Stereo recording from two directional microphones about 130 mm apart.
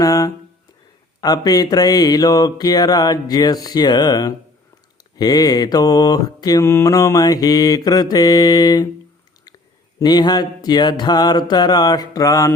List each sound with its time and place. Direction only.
0.0 s speech: 25° left (ahead or behind)
1.2 s mantra: 30° left (ahead or behind)
10.0 s mantra: 30° left (ahead or behind)